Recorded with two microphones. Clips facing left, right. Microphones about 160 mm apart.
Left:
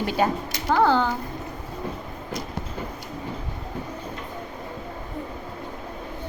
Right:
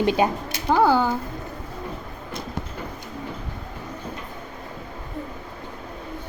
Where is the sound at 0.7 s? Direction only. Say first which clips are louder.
Right 2 dB; 10° right (ahead or behind).